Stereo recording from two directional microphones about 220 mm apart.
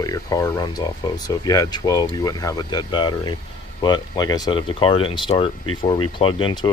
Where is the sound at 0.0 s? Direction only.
15° left (ahead or behind).